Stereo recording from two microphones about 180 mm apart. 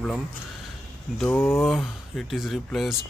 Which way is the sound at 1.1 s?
10° left (ahead or behind).